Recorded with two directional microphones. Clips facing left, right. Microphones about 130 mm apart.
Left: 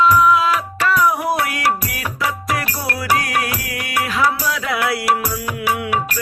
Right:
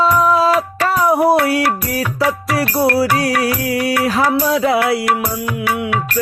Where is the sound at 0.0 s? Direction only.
35° right (ahead or behind).